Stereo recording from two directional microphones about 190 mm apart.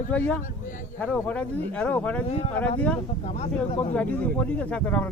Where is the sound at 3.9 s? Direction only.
5° left (ahead or behind).